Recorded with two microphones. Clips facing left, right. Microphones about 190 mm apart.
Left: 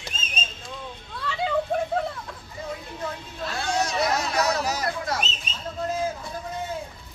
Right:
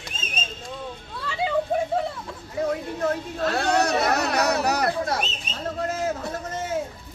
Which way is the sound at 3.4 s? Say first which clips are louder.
Right 5 dB; 65° right (ahead or behind).